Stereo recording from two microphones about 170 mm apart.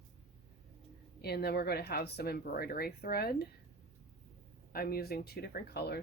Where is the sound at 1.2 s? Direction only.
70° left (ahead or behind).